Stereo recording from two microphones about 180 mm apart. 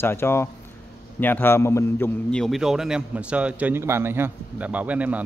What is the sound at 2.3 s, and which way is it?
A man's voice, centre (ahead or behind).